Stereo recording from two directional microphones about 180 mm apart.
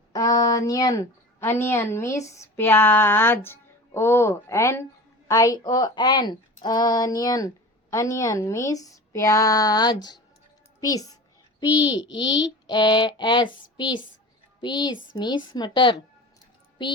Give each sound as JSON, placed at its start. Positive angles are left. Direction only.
{"t": 0.1, "sound": "a woman's voice", "side_deg": 20}